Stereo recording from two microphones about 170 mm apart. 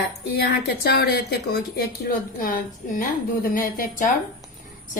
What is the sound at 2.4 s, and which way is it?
A woman's voice, 55° left (ahead or behind).